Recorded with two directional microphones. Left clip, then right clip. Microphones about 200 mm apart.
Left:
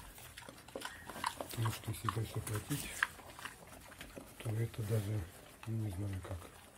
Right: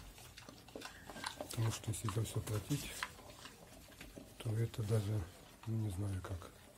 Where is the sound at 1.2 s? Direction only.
15° right (ahead or behind).